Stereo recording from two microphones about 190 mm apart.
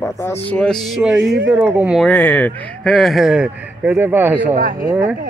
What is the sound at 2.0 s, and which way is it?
Speech, 10° left (ahead or behind).